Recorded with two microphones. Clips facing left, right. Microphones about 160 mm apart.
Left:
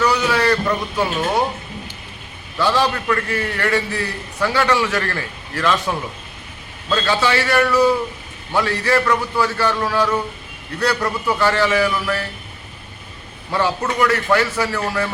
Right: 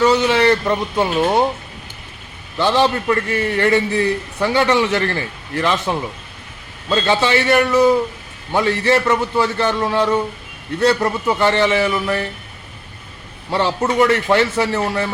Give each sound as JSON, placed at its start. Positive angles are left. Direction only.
{"t": 0.0, "sound": "a man's voice", "side_deg": -25}
{"t": 2.6, "sound": "a man's voice", "side_deg": -20}
{"t": 13.5, "sound": "a man's voice", "side_deg": -25}